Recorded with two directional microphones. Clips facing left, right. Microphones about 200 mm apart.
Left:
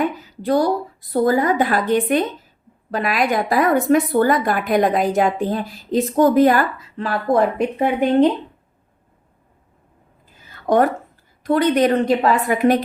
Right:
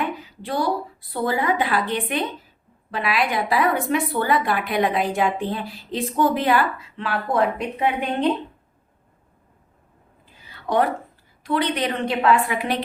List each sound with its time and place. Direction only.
0.0 s speech: 40° left (ahead or behind)
10.4 s a sound: 45° left (ahead or behind)
11.4 s speech: 45° left (ahead or behind)